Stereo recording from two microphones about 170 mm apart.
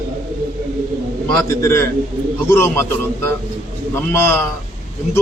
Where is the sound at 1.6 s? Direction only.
15° left (ahead or behind).